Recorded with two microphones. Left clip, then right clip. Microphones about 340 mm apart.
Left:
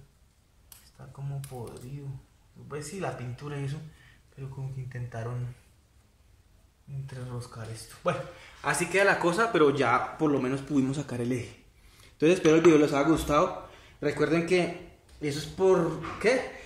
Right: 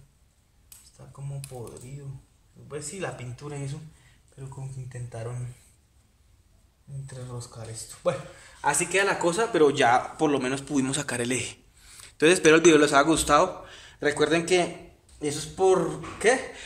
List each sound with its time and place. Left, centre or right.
8.5 s a man's voice: right